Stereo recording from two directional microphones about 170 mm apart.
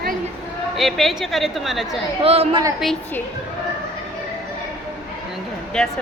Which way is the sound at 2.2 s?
35° right (ahead or behind).